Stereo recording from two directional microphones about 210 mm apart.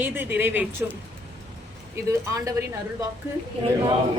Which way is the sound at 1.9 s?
15° right (ahead or behind).